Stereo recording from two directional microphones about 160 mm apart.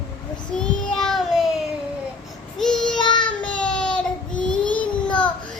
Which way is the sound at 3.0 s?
30° left (ahead or behind).